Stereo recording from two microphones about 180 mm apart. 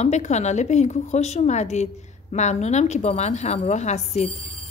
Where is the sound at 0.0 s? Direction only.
40° left (ahead or behind).